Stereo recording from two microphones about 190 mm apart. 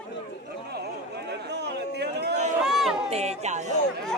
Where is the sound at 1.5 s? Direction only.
60° right (ahead or behind).